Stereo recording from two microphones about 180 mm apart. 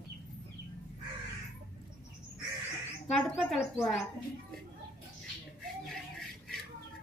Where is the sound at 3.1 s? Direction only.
5° left (ahead or behind).